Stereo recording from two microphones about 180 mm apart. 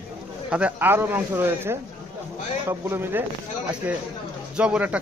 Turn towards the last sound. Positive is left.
turn(degrees=-5)  # may be behind; listen again after turning